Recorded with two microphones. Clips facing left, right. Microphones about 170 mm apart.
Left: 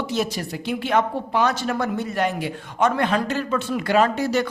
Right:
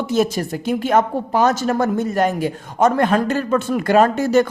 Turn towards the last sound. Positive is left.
turn(degrees=-45)  # may be behind; listen again after turning